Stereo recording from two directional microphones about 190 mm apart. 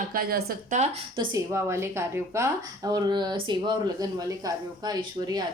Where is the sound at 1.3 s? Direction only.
15° right (ahead or behind).